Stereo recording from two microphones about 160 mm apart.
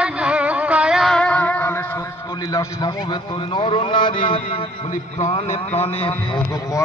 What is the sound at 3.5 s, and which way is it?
Speech, 35° left (ahead or behind).